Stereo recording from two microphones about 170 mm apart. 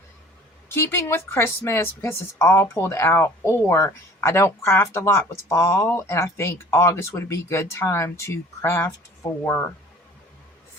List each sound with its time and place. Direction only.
0.7 s a woman's voice: 15° left (ahead or behind)